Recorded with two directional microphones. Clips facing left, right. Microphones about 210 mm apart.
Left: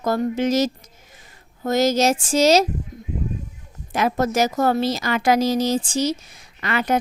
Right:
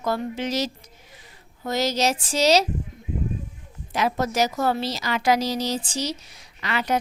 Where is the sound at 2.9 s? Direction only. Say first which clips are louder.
Left 7 dB; 40° left (ahead or behind).